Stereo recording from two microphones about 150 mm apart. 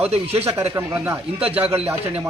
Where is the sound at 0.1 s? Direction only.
45° right (ahead or behind).